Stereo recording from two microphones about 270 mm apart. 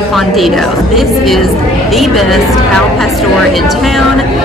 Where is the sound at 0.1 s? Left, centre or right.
Centre.